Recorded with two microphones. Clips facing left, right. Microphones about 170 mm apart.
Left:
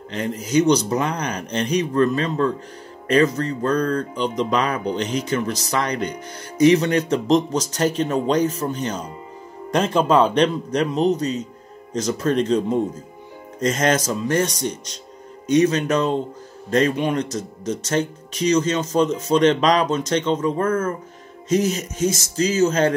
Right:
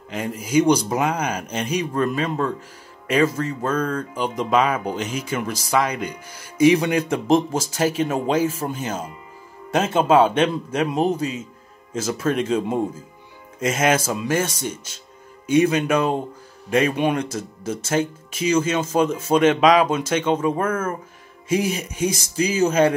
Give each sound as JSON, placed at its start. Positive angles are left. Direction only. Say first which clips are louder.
{"t": 0.1, "sound": "speech", "louder": "even", "side_deg": -10}